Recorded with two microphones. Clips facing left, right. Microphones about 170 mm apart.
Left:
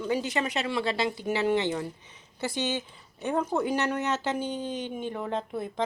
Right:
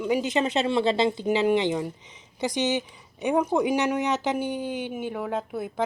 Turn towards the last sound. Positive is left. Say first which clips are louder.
# right 2 dB
turn(degrees=-5)  # may be behind; listen again after turning